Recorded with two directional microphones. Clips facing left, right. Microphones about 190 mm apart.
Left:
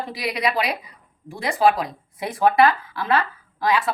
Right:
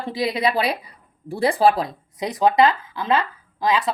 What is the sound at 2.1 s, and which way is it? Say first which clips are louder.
A woman's voice: right 1 dB; 20° right (ahead or behind).